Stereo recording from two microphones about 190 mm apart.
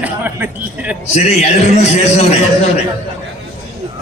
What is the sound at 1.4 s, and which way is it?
Speech, 35° left (ahead or behind).